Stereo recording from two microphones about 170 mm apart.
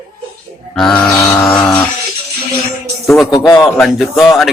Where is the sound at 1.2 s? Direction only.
15° left (ahead or behind).